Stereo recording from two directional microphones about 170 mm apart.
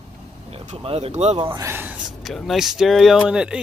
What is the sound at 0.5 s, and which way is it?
Speech, 35° right (ahead or behind).